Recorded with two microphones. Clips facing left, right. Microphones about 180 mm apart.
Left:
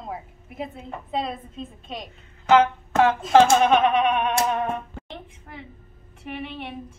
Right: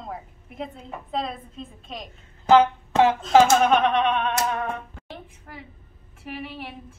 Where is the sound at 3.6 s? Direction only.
Centre (ahead or behind).